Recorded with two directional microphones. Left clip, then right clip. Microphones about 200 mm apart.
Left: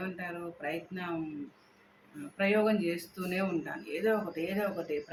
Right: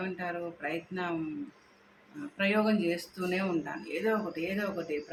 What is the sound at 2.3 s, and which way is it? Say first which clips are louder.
Speech: left 1 dB; 5° right (ahead or behind).